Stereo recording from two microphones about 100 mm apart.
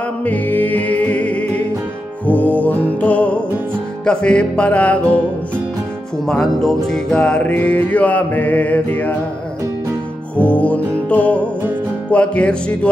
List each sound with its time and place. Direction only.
0.2 s music: 15° left (ahead or behind)
6.2 s music: 5° left (ahead or behind)
10.4 s music: 15° left (ahead or behind)